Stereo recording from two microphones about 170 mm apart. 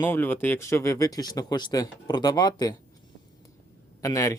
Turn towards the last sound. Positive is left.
turn(degrees=20)  # may be behind; listen again after turning